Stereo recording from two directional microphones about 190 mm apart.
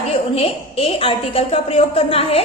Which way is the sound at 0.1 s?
30° left (ahead or behind).